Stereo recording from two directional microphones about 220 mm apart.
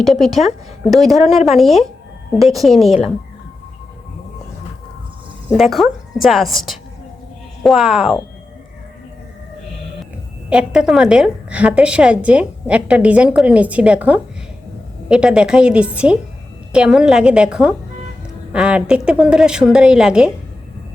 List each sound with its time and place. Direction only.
0.0 s a woman's voice: centre (ahead or behind)
5.5 s a woman's voice: centre (ahead or behind)
10.5 s a woman's voice: 5° right (ahead or behind)